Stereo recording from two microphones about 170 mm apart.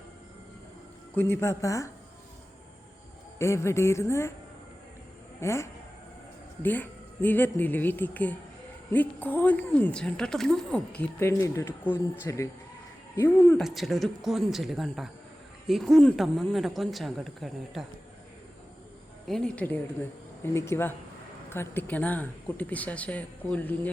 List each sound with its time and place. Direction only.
1.1 s speech: 15° left (ahead or behind)
3.3 s speech: 15° left (ahead or behind)
5.4 s speech: 15° left (ahead or behind)
11.2 s speech: 15° left (ahead or behind)
13.6 s speech: centre (ahead or behind)
19.3 s speech: 5° left (ahead or behind)